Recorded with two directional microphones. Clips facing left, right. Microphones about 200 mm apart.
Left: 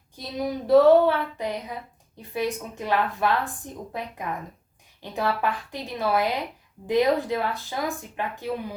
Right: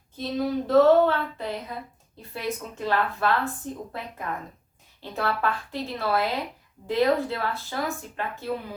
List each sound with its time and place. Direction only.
0.2 s a woman's voice: 15° left (ahead or behind)